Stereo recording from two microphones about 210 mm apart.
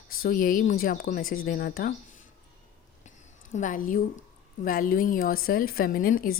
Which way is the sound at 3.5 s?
40° left (ahead or behind).